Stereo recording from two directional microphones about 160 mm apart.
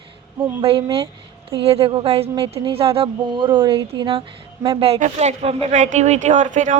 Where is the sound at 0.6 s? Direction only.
35° right (ahead or behind); by 6.8 s 50° right (ahead or behind).